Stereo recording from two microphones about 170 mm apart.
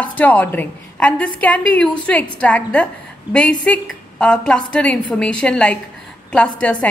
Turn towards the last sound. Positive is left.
turn(degrees=5)  # may be behind; listen again after turning